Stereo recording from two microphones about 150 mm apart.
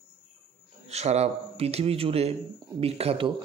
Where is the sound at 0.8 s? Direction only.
45° right (ahead or behind).